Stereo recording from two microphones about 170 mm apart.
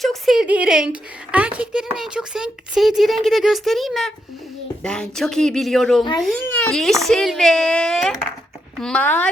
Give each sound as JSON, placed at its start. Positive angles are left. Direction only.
{"t": 0.0, "sound": "speech", "side_deg": 0}